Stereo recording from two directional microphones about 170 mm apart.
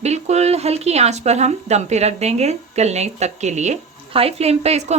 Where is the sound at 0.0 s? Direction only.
40° right (ahead or behind).